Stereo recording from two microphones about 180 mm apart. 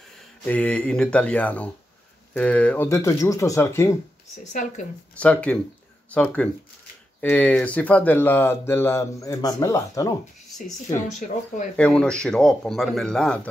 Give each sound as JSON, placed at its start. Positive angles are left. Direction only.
{"t": 0.5, "sound": "speech", "side_deg": 5}
{"t": 2.9, "sound": "speech", "side_deg": 15}
{"t": 4.5, "sound": "speech", "side_deg": 45}
{"t": 5.2, "sound": "speech", "side_deg": 5}
{"t": 11.1, "sound": "speech", "side_deg": 40}
{"t": 11.7, "sound": "a man's voice", "side_deg": 5}